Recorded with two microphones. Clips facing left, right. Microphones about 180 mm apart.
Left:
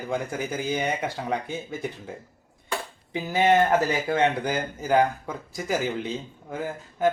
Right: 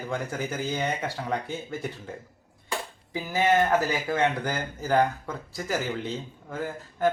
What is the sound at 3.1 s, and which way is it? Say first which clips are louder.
Speech: left 3 dB; 20° left (ahead or behind).